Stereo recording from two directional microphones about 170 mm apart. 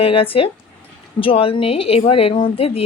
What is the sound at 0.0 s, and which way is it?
A woman's voice, 35° left (ahead or behind).